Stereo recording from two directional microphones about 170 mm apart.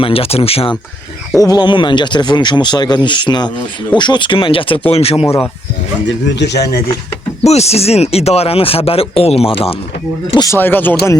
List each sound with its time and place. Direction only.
0.0 s speech: 35° left (ahead or behind)
1.4 s speech: 25° left (ahead or behind)
6.1 s speech: 90° left
7.4 s speech: 40° left (ahead or behind)
10.3 s speech: 20° left (ahead or behind)